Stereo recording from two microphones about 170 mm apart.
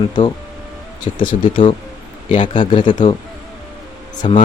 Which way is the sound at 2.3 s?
30° left (ahead or behind).